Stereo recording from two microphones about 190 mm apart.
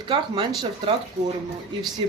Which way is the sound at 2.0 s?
25° right (ahead or behind).